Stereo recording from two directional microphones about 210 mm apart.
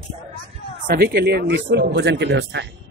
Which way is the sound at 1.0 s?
50° right (ahead or behind).